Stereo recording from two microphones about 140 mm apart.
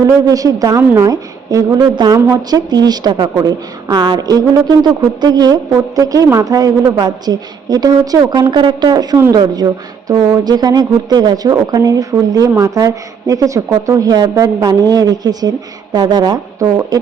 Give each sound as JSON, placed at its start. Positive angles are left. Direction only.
{"t": 0.3, "sound": "speech", "side_deg": -25}